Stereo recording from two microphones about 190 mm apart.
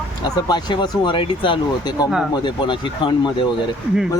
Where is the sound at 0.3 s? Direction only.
20° left (ahead or behind).